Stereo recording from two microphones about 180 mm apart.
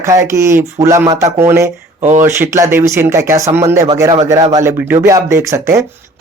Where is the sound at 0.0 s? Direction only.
15° right (ahead or behind).